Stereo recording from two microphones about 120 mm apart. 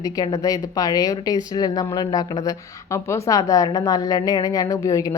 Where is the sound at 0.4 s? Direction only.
30° left (ahead or behind).